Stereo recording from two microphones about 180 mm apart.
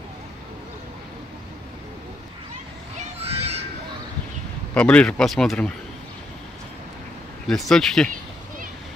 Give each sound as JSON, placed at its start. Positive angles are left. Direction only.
{"t": 3.2, "sound": "crow", "side_deg": -35}
{"t": 4.7, "sound": "speech", "side_deg": 5}
{"t": 7.4, "sound": "speech", "side_deg": 0}